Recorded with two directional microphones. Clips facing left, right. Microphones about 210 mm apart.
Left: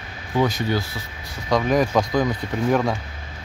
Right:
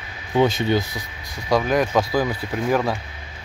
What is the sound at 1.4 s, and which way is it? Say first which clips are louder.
Speech: even; 5° right (ahead or behind).